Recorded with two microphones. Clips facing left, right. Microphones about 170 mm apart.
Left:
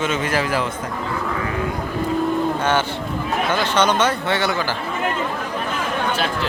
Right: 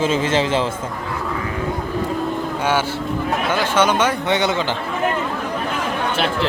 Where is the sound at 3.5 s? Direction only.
10° right (ahead or behind).